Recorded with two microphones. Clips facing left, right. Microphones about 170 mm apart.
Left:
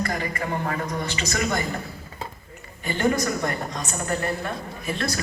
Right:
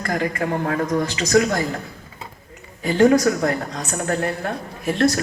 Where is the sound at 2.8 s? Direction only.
90° right.